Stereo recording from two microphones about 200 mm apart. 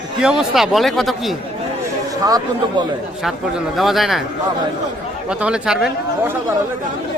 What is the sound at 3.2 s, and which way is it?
A man's voice, centre (ahead or behind).